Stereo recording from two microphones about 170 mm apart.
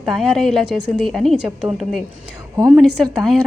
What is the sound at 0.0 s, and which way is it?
A woman's voice, centre (ahead or behind).